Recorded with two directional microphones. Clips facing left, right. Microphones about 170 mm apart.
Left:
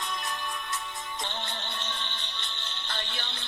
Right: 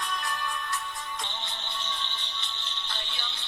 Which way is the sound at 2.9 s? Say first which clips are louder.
Left 5 dB; 55° left (ahead or behind).